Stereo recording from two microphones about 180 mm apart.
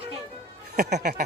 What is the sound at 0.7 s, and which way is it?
Music, 65° right (ahead or behind).